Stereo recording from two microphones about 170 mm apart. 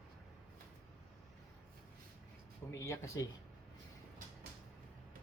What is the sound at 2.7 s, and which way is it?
Speech, 15° left (ahead or behind).